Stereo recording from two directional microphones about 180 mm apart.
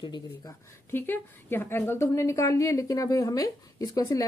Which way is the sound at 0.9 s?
10° left (ahead or behind).